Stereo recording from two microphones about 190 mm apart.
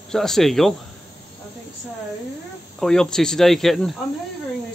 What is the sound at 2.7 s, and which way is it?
Speech, 5° left (ahead or behind).